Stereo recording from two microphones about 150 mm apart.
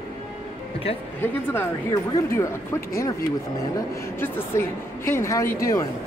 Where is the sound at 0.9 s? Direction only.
40° left (ahead or behind).